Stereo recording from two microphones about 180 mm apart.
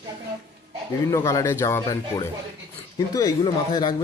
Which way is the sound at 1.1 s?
15° left (ahead or behind).